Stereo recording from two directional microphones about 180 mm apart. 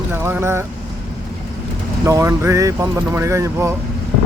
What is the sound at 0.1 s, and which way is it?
Speech, 10° right (ahead or behind).